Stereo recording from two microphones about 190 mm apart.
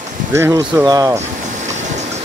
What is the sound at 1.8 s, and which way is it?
Vehicle, 40° right (ahead or behind).